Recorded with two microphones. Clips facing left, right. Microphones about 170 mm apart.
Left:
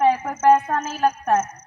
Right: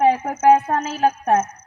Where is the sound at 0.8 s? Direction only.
60° right (ahead or behind).